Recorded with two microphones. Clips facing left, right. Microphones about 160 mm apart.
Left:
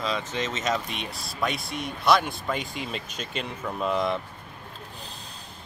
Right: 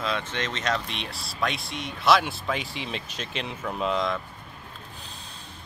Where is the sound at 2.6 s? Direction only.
45° left (ahead or behind).